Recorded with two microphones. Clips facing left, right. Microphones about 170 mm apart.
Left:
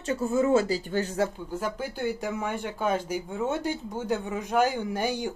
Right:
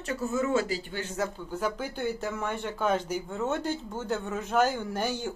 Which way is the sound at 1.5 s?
10° left (ahead or behind).